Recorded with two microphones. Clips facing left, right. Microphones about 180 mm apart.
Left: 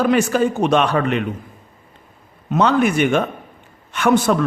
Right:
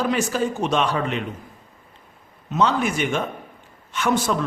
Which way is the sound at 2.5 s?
60° left (ahead or behind).